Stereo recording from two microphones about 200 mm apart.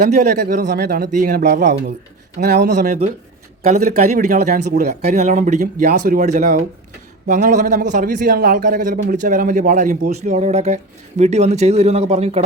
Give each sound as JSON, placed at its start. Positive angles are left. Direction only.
{"t": 0.0, "sound": "a man's voice", "side_deg": -35}
{"t": 0.6, "sound": "a man's voice", "side_deg": -55}
{"t": 4.7, "sound": "speech", "side_deg": -50}
{"t": 5.0, "sound": "a man's voice", "side_deg": -35}